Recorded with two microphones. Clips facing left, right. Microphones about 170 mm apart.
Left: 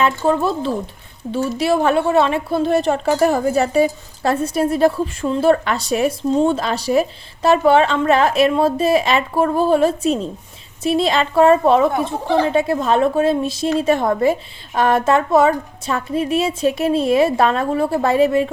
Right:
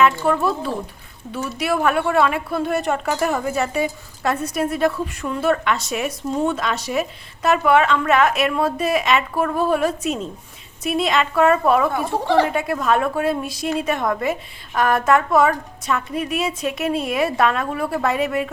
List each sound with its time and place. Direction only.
0.0 s a woman's voice: 25° left (ahead or behind)